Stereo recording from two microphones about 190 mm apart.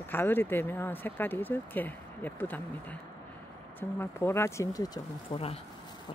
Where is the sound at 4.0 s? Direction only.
15° left (ahead or behind).